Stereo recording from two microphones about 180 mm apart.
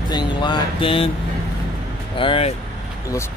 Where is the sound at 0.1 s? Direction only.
25° left (ahead or behind).